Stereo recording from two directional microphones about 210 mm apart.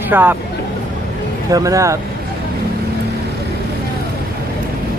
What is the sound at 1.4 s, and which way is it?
Speech, 15° right (ahead or behind).